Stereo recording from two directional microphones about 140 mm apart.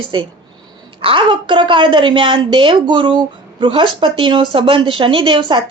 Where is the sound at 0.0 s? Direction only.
35° right (ahead or behind).